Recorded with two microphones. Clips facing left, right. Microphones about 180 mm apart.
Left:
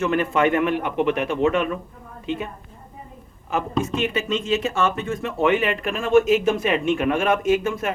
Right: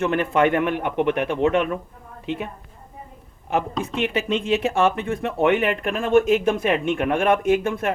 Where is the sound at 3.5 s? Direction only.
65° right (ahead or behind).